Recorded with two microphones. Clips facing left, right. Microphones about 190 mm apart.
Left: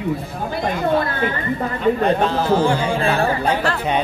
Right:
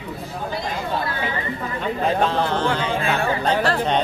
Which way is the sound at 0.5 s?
55° left (ahead or behind).